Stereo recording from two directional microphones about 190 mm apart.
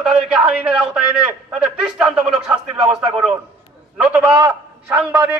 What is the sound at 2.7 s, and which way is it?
Speech, 5° right (ahead or behind).